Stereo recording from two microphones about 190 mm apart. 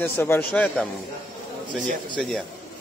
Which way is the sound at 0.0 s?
10° left (ahead or behind).